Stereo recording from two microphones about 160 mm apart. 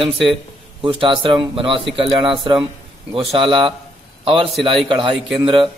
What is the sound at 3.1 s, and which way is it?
A man's voice, 35° right (ahead or behind).